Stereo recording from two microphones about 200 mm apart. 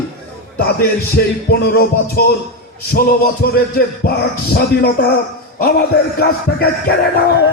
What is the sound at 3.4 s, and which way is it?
Speech, 50° left (ahead or behind).